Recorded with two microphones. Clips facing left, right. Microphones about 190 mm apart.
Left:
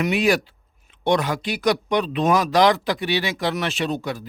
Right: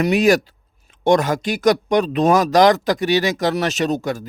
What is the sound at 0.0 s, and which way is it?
Speech, 45° right (ahead or behind).